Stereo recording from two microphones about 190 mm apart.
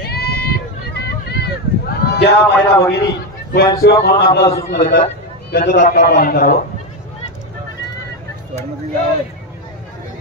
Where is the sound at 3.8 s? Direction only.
55° left (ahead or behind).